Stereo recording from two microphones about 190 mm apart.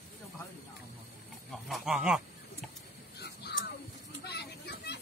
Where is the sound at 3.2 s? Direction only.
60° left (ahead or behind).